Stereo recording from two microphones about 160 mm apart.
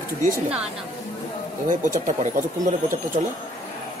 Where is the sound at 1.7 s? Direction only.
55° right (ahead or behind).